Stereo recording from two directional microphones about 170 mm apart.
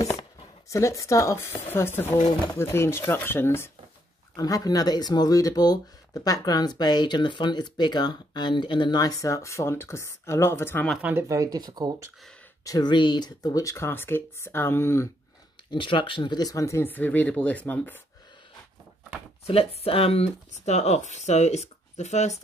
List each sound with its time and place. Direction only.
0.0 s speech: 20° left (ahead or behind)
11.0 s speech: 10° right (ahead or behind)
12.6 s speech: 25° left (ahead or behind)
15.7 s speech: 30° left (ahead or behind); by 17.9 s 10° left (ahead or behind)
19.4 s speech: 35° left (ahead or behind)